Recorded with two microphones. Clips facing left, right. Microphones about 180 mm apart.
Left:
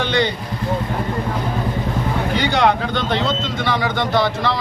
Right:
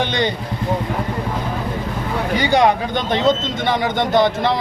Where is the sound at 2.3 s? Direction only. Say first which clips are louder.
Right 3 dB; 15° right (ahead or behind).